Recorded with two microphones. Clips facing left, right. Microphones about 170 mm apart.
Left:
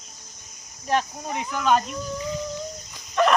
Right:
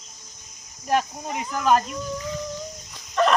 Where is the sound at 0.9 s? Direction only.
5° right (ahead or behind).